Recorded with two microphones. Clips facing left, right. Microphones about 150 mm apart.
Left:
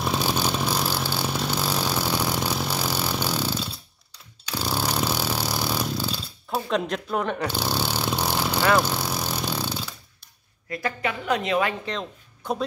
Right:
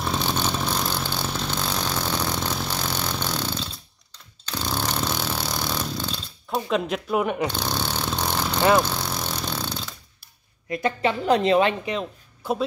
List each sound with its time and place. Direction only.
0.0 s vehicle: 10° left (ahead or behind); by 7.5 s 10° right (ahead or behind)
7.5 s vehicle: 10° left (ahead or behind)
8.7 s a sound: 10° left (ahead or behind)
10.7 s a woman's voice: 25° right (ahead or behind)
11.8 s speech: 10° right (ahead or behind)